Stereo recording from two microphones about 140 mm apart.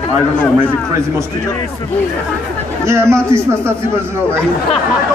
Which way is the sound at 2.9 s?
20° right (ahead or behind).